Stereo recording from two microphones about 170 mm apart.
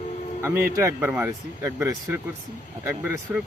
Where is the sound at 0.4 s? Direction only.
15° right (ahead or behind).